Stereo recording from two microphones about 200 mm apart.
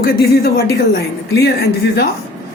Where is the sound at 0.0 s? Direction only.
50° left (ahead or behind).